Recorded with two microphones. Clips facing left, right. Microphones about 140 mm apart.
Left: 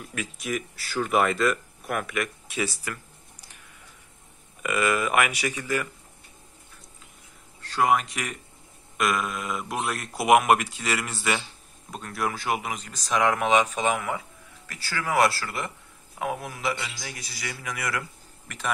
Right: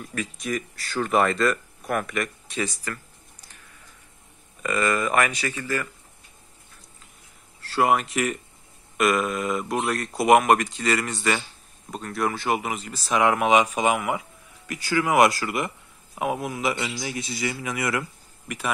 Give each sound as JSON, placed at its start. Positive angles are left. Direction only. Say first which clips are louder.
{"t": 0.0, "sound": "speech", "louder": "right 3 dB", "side_deg": 5}
{"t": 2.8, "sound": "a sound", "louder": "right 2 dB", "side_deg": 10}
{"t": 4.6, "sound": "speech", "louder": "right 1 dB", "side_deg": 5}
{"t": 7.6, "sound": "a man's voice", "louder": "right 1 dB", "side_deg": -5}
{"t": 18.5, "sound": "speech", "louder": "right 9 dB", "side_deg": -10}